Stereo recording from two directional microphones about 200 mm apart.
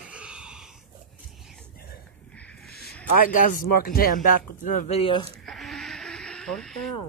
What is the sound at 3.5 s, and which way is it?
Speech, 45° left (ahead or behind).